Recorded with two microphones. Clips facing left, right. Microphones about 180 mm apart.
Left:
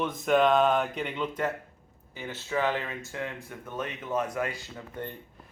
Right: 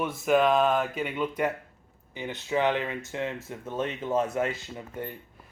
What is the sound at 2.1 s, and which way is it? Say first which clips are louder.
Speech: right 3 dB; 15° right (ahead or behind).